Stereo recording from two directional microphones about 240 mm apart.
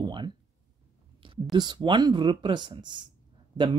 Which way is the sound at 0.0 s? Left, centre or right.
Centre.